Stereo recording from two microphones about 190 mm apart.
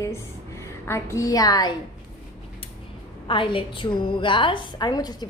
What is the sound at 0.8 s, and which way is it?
Speech, 15° left (ahead or behind).